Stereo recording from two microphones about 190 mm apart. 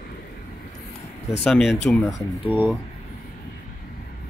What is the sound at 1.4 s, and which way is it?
Speech, centre (ahead or behind).